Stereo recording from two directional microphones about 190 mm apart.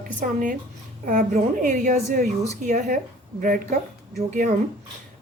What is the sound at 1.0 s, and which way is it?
A woman's voice, 45° right (ahead or behind).